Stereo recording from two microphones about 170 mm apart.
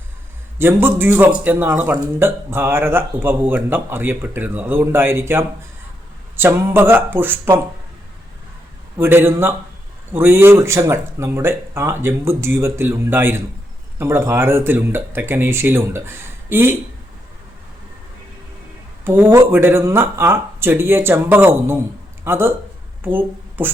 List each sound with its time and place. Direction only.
0.6 s speech: 10° right (ahead or behind)
9.0 s speech: 15° right (ahead or behind)
19.0 s speech: 15° right (ahead or behind)